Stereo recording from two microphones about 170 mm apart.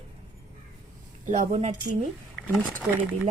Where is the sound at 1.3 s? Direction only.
45° right (ahead or behind).